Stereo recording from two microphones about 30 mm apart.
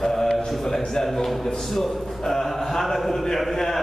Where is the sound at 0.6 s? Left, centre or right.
Centre.